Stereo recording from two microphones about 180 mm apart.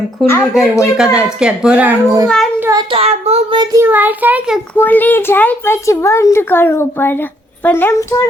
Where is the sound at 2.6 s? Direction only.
15° right (ahead or behind).